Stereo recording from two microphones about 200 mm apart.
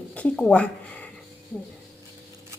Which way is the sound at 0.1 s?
5° left (ahead or behind).